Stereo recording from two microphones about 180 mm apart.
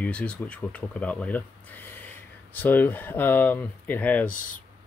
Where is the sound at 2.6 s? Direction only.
10° left (ahead or behind).